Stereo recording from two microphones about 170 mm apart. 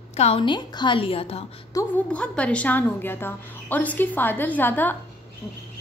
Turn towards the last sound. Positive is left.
turn(degrees=10)  # may be behind; listen again after turning